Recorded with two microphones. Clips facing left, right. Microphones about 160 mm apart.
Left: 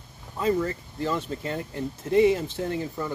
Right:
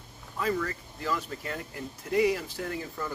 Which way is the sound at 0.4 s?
25° left (ahead or behind).